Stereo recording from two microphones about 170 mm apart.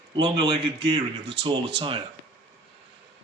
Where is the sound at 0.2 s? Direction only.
30° right (ahead or behind).